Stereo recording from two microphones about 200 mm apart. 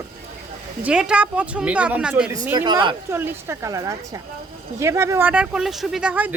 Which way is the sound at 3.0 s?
10° right (ahead or behind).